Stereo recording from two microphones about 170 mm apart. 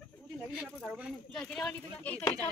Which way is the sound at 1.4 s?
5° left (ahead or behind).